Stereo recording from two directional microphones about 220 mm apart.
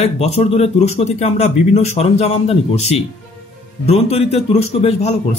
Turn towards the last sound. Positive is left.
turn(degrees=30)  # may be behind; listen again after turning